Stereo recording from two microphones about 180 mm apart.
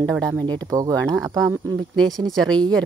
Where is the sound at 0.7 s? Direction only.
20° right (ahead or behind).